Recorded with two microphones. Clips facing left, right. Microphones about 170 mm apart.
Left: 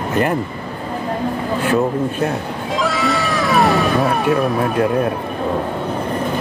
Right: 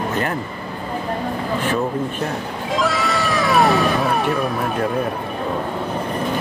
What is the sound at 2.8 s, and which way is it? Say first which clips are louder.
Cat: left 2 dB; centre (ahead or behind).